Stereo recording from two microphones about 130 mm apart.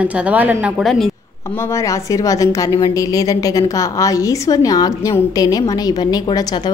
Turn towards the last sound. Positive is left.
turn(degrees=35)  # may be behind; listen again after turning